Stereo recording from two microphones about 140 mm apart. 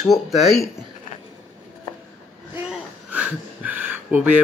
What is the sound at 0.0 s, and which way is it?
Speech, centre (ahead or behind).